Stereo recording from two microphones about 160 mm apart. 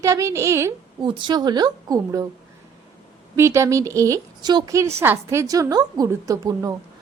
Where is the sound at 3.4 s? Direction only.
15° right (ahead or behind).